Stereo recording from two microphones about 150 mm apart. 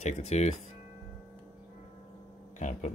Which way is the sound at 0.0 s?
50° left (ahead or behind).